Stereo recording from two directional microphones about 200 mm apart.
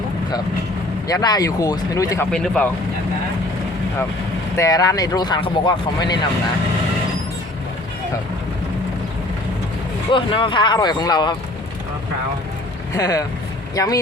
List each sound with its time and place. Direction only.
1.0 s speech: 20° left (ahead or behind)
2.3 s speech: 5° left (ahead or behind)
4.5 s speech: 15° left (ahead or behind)
10.1 s speech: 25° left (ahead or behind)
13.0 s speech: 15° left (ahead or behind)